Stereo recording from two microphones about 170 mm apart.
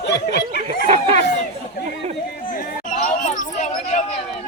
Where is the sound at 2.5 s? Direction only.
50° left (ahead or behind).